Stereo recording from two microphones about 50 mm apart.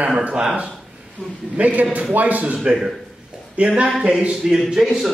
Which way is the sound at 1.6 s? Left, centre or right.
Right.